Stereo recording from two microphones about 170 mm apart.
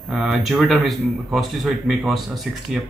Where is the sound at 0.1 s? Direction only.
Centre (ahead or behind).